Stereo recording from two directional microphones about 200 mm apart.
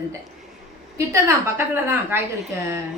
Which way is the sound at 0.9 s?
15° right (ahead or behind).